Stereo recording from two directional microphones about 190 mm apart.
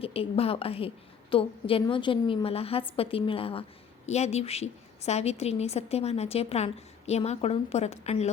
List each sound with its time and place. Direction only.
0.0 s a woman's voice: 30° left (ahead or behind)